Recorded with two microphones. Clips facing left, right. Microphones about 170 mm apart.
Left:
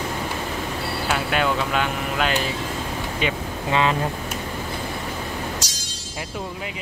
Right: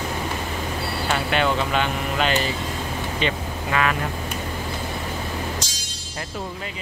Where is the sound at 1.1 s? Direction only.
5° left (ahead or behind).